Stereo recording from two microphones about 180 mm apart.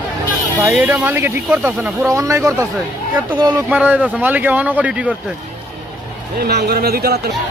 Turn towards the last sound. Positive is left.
turn(degrees=-60)  # may be behind; listen again after turning